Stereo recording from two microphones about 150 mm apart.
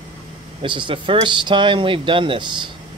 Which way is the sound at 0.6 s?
35° right (ahead or behind).